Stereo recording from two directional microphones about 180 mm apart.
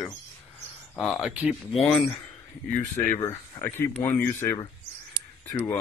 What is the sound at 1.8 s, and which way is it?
Speech, 5° left (ahead or behind).